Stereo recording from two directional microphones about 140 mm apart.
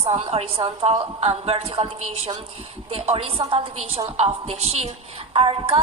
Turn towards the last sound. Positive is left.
turn(degrees=-40)  # may be behind; listen again after turning